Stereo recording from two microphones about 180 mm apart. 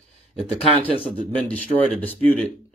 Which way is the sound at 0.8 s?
30° left (ahead or behind).